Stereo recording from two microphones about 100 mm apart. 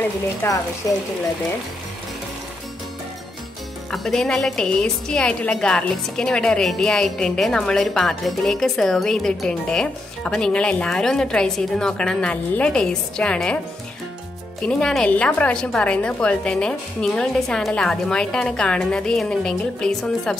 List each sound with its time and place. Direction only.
0.4 s speech: 20° left (ahead or behind)
3.9 s a woman's voice: 5° left (ahead or behind)
14.7 s a woman's voice: 5° left (ahead or behind)